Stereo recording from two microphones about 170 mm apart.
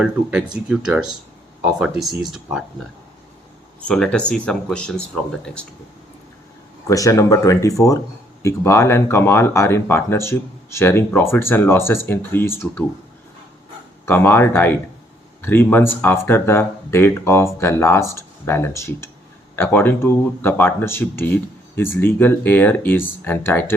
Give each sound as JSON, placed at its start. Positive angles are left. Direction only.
{"t": 0.0, "sound": "speech", "side_deg": -5}
{"t": 3.8, "sound": "speech", "side_deg": 5}
{"t": 6.8, "sound": "speech", "side_deg": 20}
{"t": 14.0, "sound": "speech", "side_deg": 10}